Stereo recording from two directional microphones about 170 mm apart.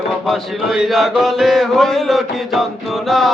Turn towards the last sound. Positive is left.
turn(degrees=0)  # may be behind; listen again after turning